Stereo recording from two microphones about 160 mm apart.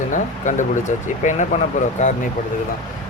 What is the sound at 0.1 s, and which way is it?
Speech, 50° left (ahead or behind).